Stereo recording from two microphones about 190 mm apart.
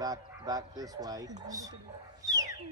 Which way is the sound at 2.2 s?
20° right (ahead or behind).